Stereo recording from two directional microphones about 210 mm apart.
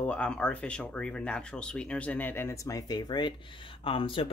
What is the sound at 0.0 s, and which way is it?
Speech, 5° left (ahead or behind).